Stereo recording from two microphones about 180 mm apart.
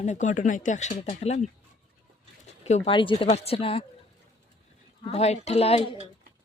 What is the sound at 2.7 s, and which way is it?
Speech, 35° left (ahead or behind).